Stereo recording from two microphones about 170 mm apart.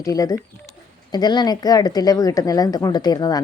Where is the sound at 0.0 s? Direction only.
20° left (ahead or behind).